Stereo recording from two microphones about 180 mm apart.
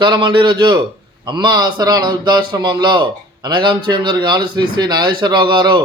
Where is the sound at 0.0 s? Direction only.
25° right (ahead or behind).